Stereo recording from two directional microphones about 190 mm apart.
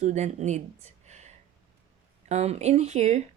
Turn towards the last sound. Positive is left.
turn(degrees=-35)  # may be behind; listen again after turning